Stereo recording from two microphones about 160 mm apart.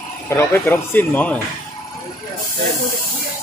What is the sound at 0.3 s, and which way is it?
Speech, 15° left (ahead or behind).